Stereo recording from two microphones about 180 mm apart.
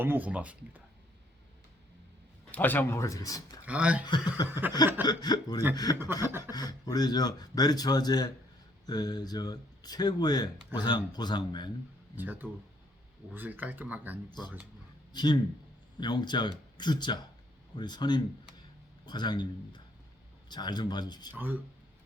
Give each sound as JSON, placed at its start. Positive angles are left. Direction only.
{"t": 0.0, "sound": "speech", "side_deg": -10}
{"t": 2.5, "sound": "speech", "side_deg": 10}
{"t": 3.7, "sound": "speech", "side_deg": -5}
{"t": 4.0, "sound": "speech", "side_deg": 25}
{"t": 12.1, "sound": "speech", "side_deg": -10}
{"t": 14.3, "sound": "a man's voice", "side_deg": 25}